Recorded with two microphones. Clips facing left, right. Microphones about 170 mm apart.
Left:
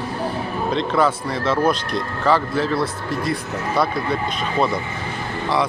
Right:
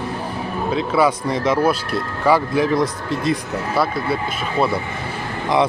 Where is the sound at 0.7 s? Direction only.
5° right (ahead or behind).